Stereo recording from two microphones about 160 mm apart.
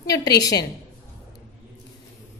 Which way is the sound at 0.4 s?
25° left (ahead or behind).